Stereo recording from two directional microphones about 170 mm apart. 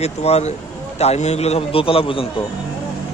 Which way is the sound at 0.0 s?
40° left (ahead or behind).